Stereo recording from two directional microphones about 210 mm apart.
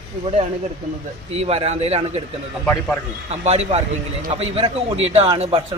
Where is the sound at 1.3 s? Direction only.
30° right (ahead or behind).